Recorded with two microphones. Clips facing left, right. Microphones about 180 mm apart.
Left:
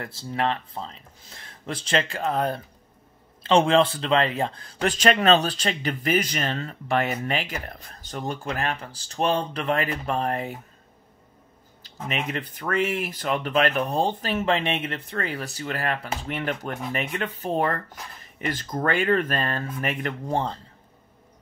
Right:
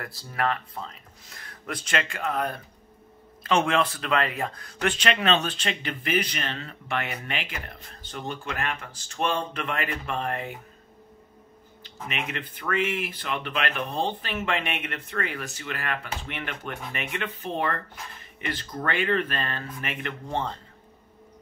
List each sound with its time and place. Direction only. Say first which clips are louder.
0.0 s speech: left 2 dB; 25° left (ahead or behind)
11.8 s speech: left 4 dB; 40° left (ahead or behind)